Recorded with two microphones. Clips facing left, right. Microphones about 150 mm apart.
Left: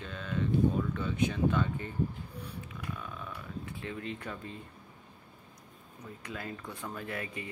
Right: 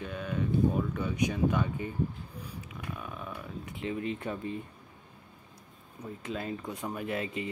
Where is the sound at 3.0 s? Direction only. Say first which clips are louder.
Right 2 dB; 15° right (ahead or behind).